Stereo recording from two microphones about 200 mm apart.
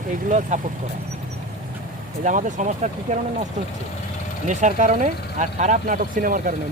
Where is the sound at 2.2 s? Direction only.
40° right (ahead or behind).